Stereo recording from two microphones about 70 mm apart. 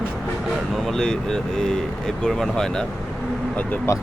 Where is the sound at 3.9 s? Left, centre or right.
Left.